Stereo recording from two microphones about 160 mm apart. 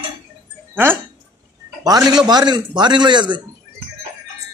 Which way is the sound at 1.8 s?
25° right (ahead or behind).